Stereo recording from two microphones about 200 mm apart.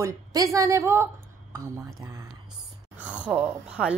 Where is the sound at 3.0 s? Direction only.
5° right (ahead or behind).